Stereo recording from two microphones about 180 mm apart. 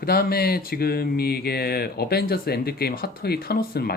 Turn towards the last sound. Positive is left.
turn(degrees=60)  # may be behind; listen again after turning